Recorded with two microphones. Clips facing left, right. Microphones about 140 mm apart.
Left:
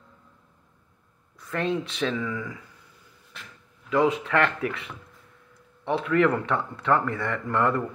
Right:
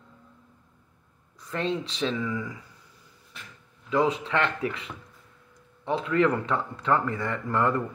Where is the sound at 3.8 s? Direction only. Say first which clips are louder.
Left 2 dB; 30° right (ahead or behind).